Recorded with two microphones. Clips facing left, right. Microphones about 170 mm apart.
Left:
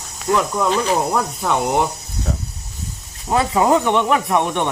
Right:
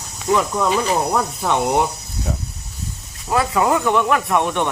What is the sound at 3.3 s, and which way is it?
Speech, 25° left (ahead or behind).